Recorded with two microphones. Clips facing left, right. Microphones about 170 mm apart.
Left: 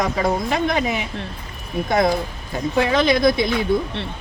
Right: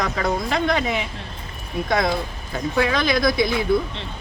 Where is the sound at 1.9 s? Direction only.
25° left (ahead or behind).